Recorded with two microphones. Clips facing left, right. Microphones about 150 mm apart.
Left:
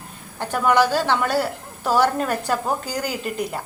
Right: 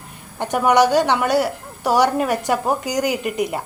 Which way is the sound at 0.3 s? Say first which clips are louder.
Right 3 dB; 15° right (ahead or behind).